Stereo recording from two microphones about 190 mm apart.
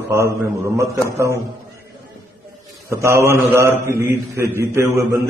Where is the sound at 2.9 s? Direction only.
15° right (ahead or behind).